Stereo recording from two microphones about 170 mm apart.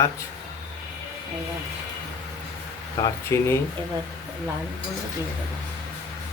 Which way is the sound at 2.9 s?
20° left (ahead or behind).